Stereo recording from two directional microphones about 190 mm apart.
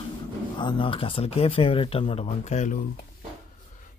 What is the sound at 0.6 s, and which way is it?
Speech, 25° left (ahead or behind).